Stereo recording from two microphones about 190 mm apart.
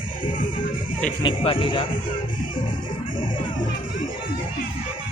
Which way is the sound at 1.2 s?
30° left (ahead or behind).